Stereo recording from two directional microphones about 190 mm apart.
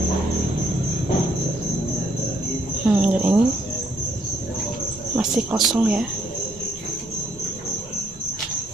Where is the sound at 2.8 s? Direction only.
5° right (ahead or behind).